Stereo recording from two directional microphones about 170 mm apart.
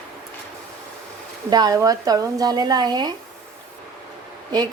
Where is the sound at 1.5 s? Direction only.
20° right (ahead or behind).